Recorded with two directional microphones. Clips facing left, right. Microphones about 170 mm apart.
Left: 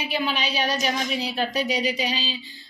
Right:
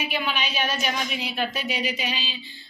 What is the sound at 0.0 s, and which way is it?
A woman's voice, 35° left (ahead or behind).